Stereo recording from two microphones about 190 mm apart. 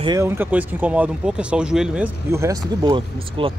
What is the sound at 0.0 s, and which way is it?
Speech, 15° right (ahead or behind).